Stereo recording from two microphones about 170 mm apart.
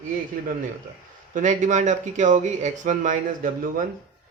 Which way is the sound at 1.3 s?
45° right (ahead or behind).